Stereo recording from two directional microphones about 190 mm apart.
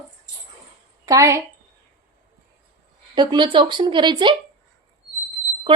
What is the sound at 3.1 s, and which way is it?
Speech, 25° right (ahead or behind).